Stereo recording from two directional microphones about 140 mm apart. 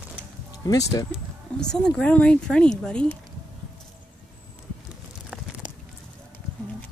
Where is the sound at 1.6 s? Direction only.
5° left (ahead or behind).